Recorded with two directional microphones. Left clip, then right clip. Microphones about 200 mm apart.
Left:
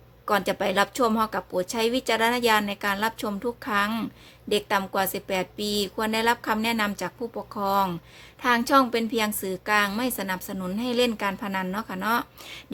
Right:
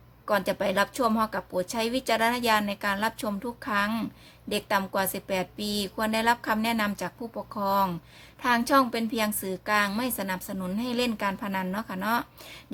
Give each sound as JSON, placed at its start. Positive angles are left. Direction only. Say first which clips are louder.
{"t": 0.3, "sound": "a woman's voice", "louder": "left 2 dB", "side_deg": 5}